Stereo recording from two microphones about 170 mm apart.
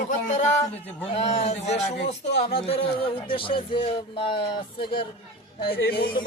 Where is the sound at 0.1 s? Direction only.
45° left (ahead or behind).